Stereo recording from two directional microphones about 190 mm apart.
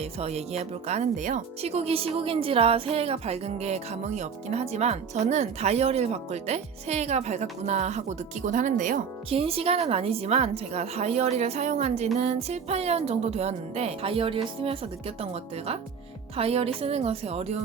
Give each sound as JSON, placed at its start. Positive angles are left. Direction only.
{"t": 0.0, "sound": "speech", "side_deg": -35}